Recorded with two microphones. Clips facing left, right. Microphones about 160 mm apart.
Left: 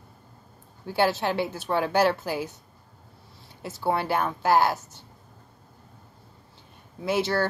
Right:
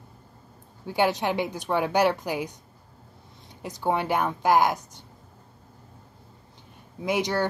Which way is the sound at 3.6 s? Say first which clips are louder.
Even; 15° right (ahead or behind).